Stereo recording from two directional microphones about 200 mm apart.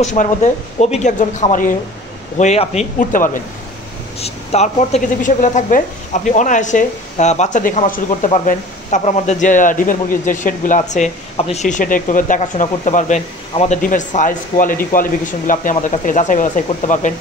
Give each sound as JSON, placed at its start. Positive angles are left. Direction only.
{"t": 0.0, "sound": "a woman's voice", "side_deg": 40}